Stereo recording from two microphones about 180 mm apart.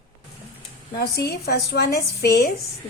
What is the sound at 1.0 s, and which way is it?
A woman's voice, 65° left (ahead or behind).